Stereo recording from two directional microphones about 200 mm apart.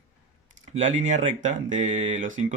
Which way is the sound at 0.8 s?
35° right (ahead or behind).